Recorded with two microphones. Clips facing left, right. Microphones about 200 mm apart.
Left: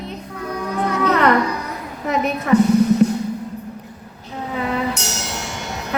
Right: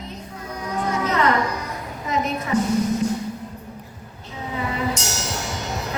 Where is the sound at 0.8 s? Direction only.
60° left (ahead or behind).